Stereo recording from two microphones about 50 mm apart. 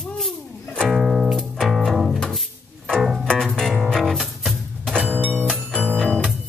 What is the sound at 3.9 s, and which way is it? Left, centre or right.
Music, centre.